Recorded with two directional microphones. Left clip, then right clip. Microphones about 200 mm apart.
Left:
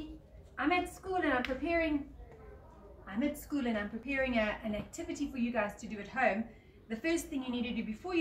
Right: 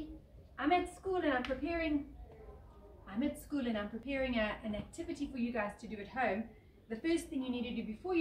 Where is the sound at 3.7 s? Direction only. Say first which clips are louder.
Left 3 dB; centre (ahead or behind).